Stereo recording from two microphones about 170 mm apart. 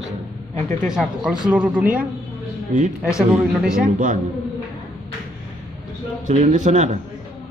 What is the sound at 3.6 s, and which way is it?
Speech, 50° right (ahead or behind).